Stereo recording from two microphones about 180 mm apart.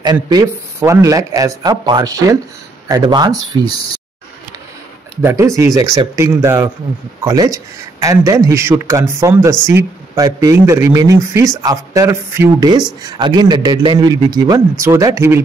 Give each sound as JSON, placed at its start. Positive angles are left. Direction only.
{"t": 0.0, "sound": "speech", "side_deg": -20}
{"t": 5.2, "sound": "a man's voice", "side_deg": -15}